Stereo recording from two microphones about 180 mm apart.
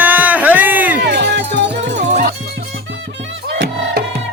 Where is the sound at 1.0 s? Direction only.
70° right (ahead or behind).